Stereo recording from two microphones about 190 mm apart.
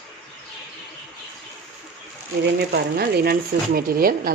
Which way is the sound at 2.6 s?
55° right (ahead or behind).